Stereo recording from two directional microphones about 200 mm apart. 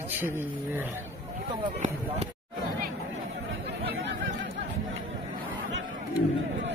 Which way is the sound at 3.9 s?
70° right (ahead or behind).